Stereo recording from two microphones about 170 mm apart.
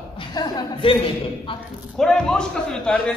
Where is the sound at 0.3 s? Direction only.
30° left (ahead or behind).